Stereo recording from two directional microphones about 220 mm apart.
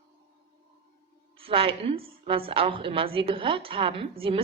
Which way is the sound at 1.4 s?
25° right (ahead or behind).